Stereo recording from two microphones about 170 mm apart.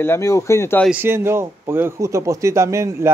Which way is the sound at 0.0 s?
15° left (ahead or behind).